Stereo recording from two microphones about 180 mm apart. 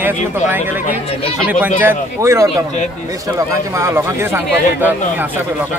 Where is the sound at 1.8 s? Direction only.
15° right (ahead or behind).